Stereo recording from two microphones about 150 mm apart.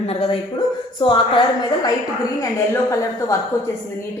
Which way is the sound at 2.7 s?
20° left (ahead or behind).